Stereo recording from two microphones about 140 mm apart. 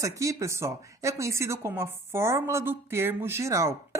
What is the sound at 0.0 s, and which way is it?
Speech, 20° right (ahead or behind).